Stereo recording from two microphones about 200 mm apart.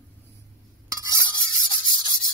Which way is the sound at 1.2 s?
5° left (ahead or behind).